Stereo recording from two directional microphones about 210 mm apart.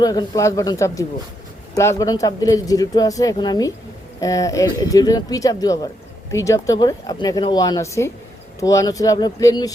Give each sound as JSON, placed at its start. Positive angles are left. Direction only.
{"t": 0.0, "sound": "speech", "side_deg": 20}